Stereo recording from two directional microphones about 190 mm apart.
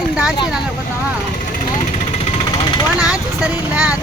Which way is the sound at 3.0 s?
5° right (ahead or behind).